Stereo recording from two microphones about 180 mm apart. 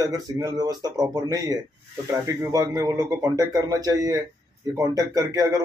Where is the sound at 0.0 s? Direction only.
20° right (ahead or behind).